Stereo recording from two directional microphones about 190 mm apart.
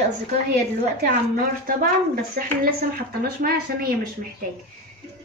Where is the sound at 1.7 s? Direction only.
50° right (ahead or behind).